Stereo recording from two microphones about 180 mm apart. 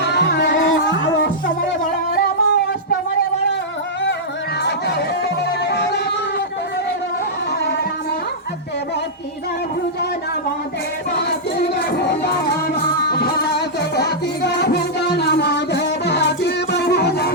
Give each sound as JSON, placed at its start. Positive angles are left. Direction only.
{"t": 0.0, "sound": "music", "side_deg": 70}
{"t": 2.1, "sound": "music", "side_deg": 60}
{"t": 4.6, "sound": "music", "side_deg": 65}
{"t": 11.2, "sound": "music", "side_deg": 65}